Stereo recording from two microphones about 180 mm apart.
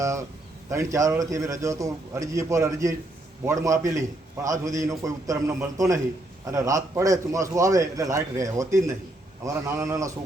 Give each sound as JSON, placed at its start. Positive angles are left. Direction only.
{"t": 0.7, "sound": "a man's voice", "side_deg": -15}